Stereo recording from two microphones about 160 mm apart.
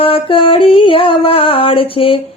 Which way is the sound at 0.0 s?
35° left (ahead or behind).